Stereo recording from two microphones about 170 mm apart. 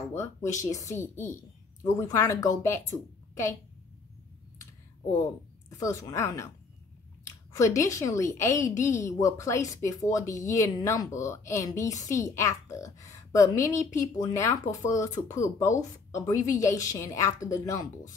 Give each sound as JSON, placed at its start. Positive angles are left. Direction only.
{"t": 0.1, "sound": "a woman's voice", "side_deg": 15}
{"t": 5.7, "sound": "a woman's voice", "side_deg": 20}